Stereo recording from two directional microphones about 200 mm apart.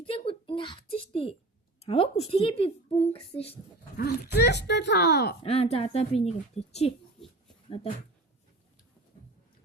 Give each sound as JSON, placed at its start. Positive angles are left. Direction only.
{"t": 0.0, "sound": "a sound", "side_deg": 25}
{"t": 1.1, "sound": "a woman's voice", "side_deg": 30}
{"t": 3.9, "sound": "speech", "side_deg": 50}
{"t": 5.4, "sound": "speech", "side_deg": 30}